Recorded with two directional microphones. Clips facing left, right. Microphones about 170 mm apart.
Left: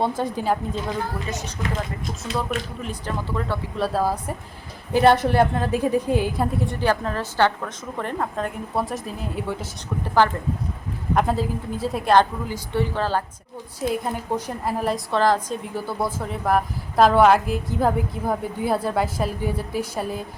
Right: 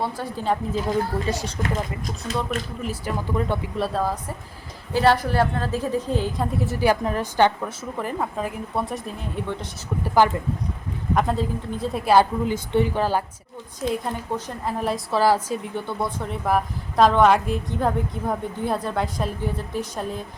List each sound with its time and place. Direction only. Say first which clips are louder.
0.0 s a woman's voice: left 4 dB; 20° left (ahead or behind)
0.4 s speech: right 3 dB; centre (ahead or behind)
1.3 s speech: right 4 dB; 30° right (ahead or behind)
2.8 s speech: right 2 dB; 10° right (ahead or behind)
3.8 s speech: left 3 dB; centre (ahead or behind)
4.9 s a woman's voice: left 3 dB; 20° left (ahead or behind); by 7.7 s 15° right (ahead or behind)
7.9 s speech: left 1 dB; 5° right (ahead or behind)
11.1 s speech: left 1 dB; centre (ahead or behind)
12.5 s speech: right 3 dB; 20° right (ahead or behind)
13.8 s speech: left 1 dB; 10° left (ahead or behind); by 15.7 s 10° right (ahead or behind)
15.7 s speech: left 1 dB; 5° left (ahead or behind)